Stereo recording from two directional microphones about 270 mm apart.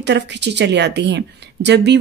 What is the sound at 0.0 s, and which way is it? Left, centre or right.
Speech, right.